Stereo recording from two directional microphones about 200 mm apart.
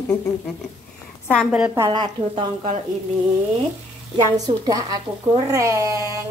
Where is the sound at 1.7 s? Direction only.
20° right (ahead or behind).